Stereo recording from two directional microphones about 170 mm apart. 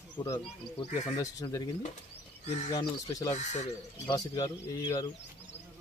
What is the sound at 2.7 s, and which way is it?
Speech, 20° left (ahead or behind).